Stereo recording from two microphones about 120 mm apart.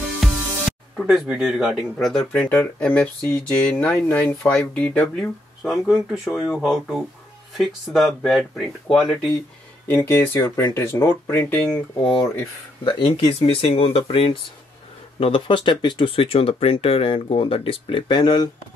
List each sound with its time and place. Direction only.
0.2 s speech: centre (ahead or behind)
2.4 s speech: 20° left (ahead or behind)
4.5 s speech: 10° left (ahead or behind)
5.6 s speech: centre (ahead or behind)
9.8 s speech: 20° left (ahead or behind)
12.0 s speech: 50° left (ahead or behind)